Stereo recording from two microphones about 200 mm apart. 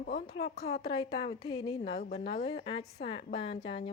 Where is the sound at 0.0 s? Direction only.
55° left (ahead or behind).